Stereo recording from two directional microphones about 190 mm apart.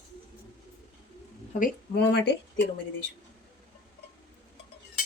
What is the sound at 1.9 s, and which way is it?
Speech, 60° left (ahead or behind).